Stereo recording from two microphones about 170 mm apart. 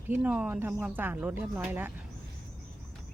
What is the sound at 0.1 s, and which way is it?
Speech, 5° right (ahead or behind).